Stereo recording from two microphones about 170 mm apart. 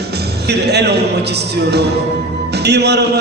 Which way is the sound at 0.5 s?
75° right (ahead or behind).